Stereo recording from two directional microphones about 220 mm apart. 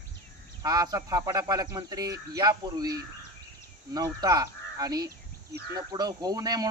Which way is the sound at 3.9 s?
15° right (ahead or behind).